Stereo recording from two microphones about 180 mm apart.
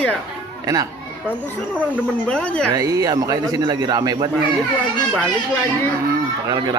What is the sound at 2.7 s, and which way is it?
A man's voice, 20° right (ahead or behind).